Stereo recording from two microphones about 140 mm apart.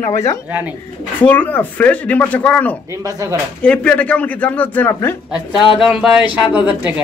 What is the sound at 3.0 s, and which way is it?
Speech, 20° right (ahead or behind).